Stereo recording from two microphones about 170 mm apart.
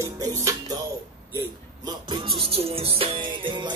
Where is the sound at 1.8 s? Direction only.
25° right (ahead or behind).